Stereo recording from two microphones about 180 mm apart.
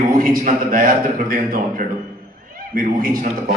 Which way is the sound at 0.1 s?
50° right (ahead or behind).